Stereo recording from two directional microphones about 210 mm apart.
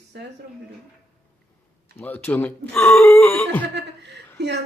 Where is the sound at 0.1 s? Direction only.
55° right (ahead or behind).